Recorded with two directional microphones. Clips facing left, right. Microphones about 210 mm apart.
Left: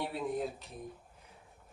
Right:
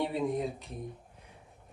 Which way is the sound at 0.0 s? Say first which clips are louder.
Right 4 dB; centre (ahead or behind).